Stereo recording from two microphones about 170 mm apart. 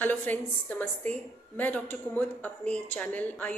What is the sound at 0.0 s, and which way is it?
A woman's voice, 10° left (ahead or behind).